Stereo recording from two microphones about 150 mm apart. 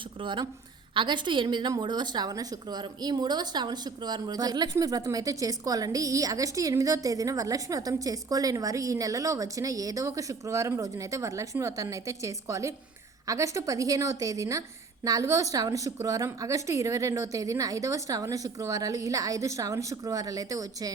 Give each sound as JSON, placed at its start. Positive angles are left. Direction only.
{"t": 0.2, "sound": "a woman's voice", "side_deg": -30}